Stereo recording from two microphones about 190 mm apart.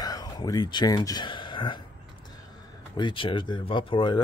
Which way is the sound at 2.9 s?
25° left (ahead or behind).